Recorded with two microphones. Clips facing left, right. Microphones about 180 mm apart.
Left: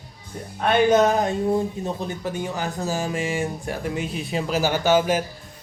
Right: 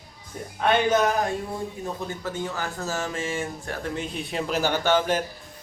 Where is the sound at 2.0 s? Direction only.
20° left (ahead or behind).